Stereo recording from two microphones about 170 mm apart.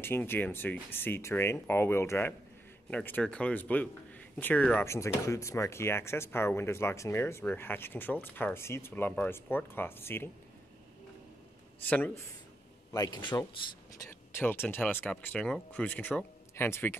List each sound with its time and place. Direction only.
0.0 s speech: 15° left (ahead or behind)
11.9 s speech: 10° left (ahead or behind)
12.9 s a man's voice: 25° left (ahead or behind)
14.3 s speech: 10° left (ahead or behind)